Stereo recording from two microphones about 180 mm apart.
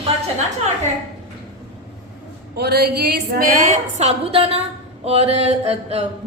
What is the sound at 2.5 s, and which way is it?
Speech, 65° right (ahead or behind).